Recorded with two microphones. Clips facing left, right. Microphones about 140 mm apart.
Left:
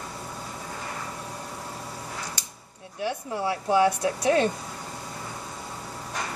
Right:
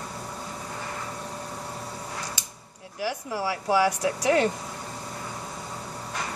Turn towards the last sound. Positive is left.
turn(degrees=30)  # may be behind; listen again after turning